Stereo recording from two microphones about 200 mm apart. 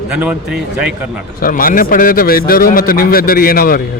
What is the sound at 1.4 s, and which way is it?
A man's voice, 45° left (ahead or behind).